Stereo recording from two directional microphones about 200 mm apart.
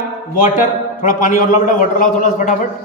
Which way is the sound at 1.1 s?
40° left (ahead or behind).